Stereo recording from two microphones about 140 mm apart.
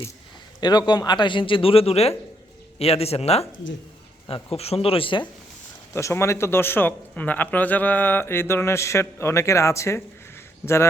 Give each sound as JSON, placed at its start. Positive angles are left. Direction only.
{"t": 0.6, "sound": "a man's voice", "side_deg": 30}
{"t": 4.5, "sound": "speech", "side_deg": 45}
{"t": 5.9, "sound": "speech", "side_deg": 20}